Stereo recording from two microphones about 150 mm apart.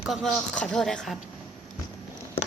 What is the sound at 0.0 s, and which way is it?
Speech, centre (ahead or behind).